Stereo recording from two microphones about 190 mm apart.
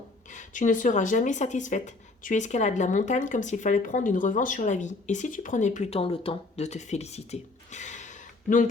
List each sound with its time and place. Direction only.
0.3 s speech: 40° left (ahead or behind)